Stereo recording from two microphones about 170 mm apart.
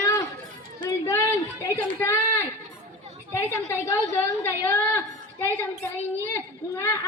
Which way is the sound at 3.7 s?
15° left (ahead or behind).